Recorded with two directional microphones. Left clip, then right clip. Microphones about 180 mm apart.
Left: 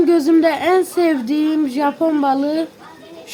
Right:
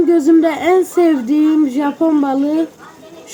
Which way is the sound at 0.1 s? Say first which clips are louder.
Right 2 dB; 25° left (ahead or behind).